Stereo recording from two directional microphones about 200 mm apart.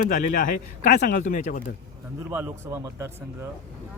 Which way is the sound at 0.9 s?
55° left (ahead or behind).